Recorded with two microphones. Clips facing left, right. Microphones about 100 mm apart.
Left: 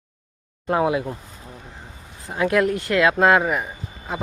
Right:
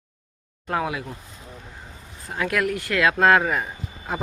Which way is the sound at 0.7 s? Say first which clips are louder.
Left 6 dB; 25° left (ahead or behind).